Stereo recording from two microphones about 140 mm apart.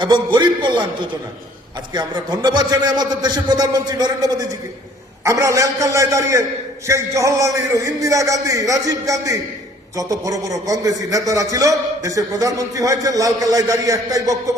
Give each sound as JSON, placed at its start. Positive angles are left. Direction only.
{"t": 0.0, "sound": "a man's voice", "side_deg": -35}
{"t": 1.9, "sound": "a man's voice", "side_deg": -30}